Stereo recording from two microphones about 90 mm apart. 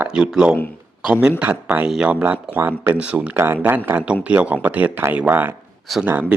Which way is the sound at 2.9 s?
15° right (ahead or behind).